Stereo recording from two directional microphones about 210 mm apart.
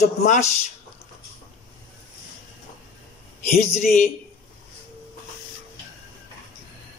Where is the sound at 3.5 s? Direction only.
35° left (ahead or behind).